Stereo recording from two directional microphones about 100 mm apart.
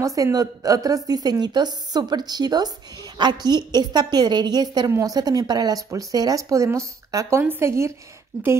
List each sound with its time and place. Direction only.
0.0 s a woman's voice: 35° right (ahead or behind)